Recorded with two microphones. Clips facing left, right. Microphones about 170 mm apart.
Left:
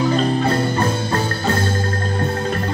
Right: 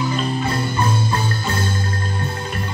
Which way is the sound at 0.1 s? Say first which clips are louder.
Left 5 dB; 40° left (ahead or behind).